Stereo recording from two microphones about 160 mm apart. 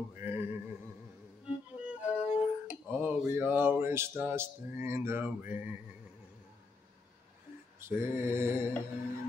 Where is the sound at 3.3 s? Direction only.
15° right (ahead or behind).